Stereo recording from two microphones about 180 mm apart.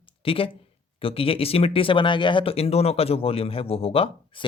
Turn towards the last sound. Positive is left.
turn(degrees=30)  # may be behind; listen again after turning